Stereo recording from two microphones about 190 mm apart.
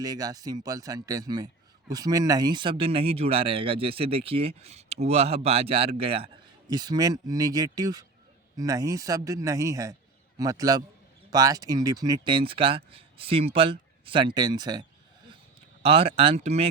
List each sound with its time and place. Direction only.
0.0 s speech: 20° right (ahead or behind)